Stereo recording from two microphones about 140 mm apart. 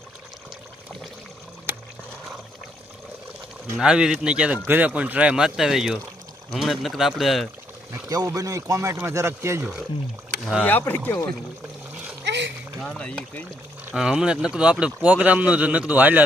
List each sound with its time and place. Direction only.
3.8 s speech: 5° right (ahead or behind)
7.9 s speech: 25° right (ahead or behind)
10.6 s speech: 15° left (ahead or behind)
12.8 s speech: 10° left (ahead or behind)
13.9 s speech: 5° right (ahead or behind)